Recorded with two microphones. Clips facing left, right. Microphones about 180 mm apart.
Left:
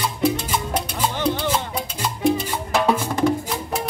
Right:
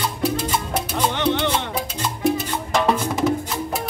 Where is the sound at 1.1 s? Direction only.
70° right (ahead or behind).